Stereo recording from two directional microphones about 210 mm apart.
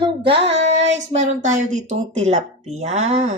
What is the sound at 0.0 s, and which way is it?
Child singing, 25° right (ahead or behind).